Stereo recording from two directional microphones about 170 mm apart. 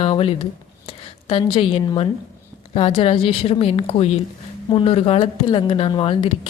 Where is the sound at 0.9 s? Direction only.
30° left (ahead or behind).